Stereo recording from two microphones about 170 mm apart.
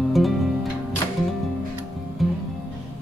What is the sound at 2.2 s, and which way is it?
Music, centre (ahead or behind).